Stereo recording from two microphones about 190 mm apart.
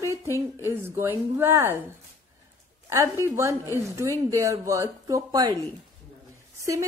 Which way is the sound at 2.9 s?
15° right (ahead or behind).